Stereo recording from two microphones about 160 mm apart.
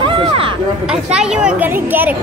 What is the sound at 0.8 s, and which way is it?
Speech, 5° right (ahead or behind).